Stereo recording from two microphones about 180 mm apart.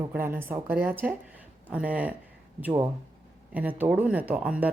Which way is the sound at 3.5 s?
10° right (ahead or behind).